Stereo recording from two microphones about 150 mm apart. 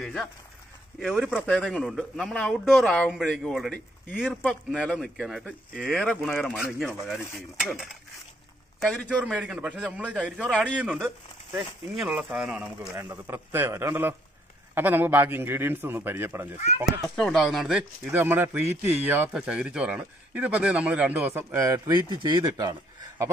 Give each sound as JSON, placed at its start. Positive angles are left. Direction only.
{"t": 0.0, "sound": "speech", "side_deg": 0}
{"t": 9.2, "sound": "a man's voice", "side_deg": -10}
{"t": 12.9, "sound": "a man's voice", "side_deg": -15}
{"t": 17.1, "sound": "a man's voice", "side_deg": 5}